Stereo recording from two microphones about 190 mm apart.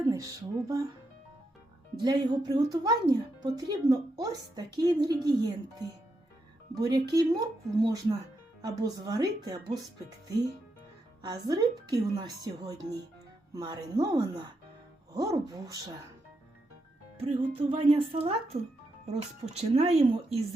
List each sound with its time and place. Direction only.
0.1 s speech: 20° right (ahead or behind)
2.0 s a woman's voice: 20° right (ahead or behind)
6.7 s a woman's voice: 20° right (ahead or behind)
11.2 s a woman's voice: 20° right (ahead or behind)
17.2 s a woman's voice: 30° right (ahead or behind)